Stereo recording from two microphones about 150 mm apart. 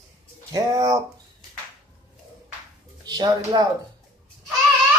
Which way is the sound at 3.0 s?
25° right (ahead or behind).